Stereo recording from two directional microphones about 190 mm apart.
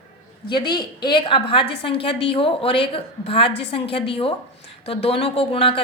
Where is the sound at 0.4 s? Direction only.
25° left (ahead or behind).